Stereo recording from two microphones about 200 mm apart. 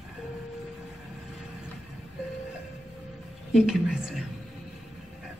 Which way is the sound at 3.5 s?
Centre (ahead or behind).